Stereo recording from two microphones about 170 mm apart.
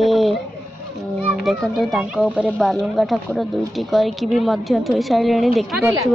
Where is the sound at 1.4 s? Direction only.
Centre (ahead or behind).